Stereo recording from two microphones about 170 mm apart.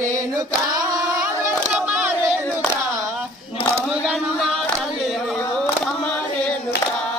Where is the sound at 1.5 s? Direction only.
10° right (ahead or behind).